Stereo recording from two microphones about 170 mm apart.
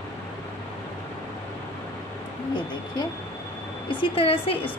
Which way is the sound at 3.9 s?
30° left (ahead or behind).